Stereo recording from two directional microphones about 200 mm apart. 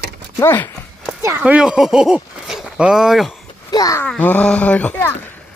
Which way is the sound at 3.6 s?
20° left (ahead or behind).